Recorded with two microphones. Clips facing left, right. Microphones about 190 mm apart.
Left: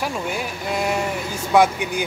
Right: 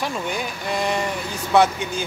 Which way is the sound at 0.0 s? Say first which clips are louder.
Left 1 dB; 5° left (ahead or behind).